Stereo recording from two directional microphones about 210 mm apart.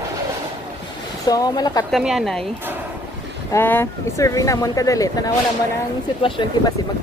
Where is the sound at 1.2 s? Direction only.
15° left (ahead or behind).